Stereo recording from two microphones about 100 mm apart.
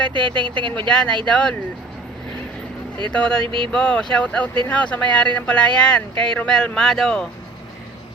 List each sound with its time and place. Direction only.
0.1 s speech: 55° right (ahead or behind)
0.9 s speech: 5° left (ahead or behind)
3.1 s speech: 10° left (ahead or behind)
3.4 s speech: 55° right (ahead or behind)
3.7 s speech: 10° left (ahead or behind)